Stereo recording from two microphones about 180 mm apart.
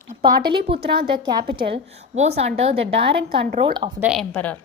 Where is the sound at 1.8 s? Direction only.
35° right (ahead or behind).